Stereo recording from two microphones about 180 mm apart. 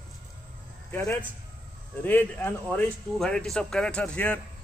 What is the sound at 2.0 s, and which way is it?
A man's voice, 10° left (ahead or behind).